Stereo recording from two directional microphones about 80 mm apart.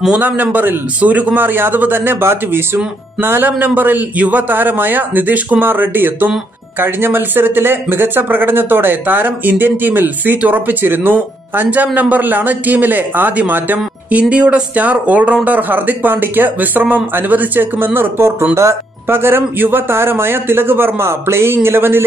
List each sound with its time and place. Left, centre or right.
0.2 s speech: right